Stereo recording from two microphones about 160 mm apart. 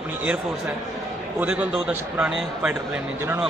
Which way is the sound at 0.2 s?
10° right (ahead or behind).